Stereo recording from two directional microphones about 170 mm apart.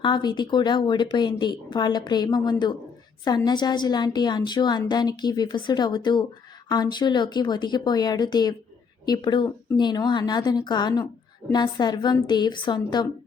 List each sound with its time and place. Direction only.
0.0 s speech: 25° left (ahead or behind)